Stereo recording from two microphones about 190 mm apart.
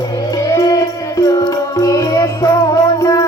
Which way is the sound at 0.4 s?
15° left (ahead or behind).